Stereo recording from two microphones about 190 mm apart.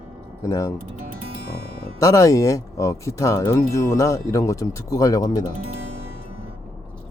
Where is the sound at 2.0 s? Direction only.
15° left (ahead or behind).